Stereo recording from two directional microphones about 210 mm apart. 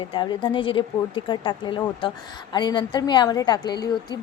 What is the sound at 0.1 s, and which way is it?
A woman's voice, 20° left (ahead or behind).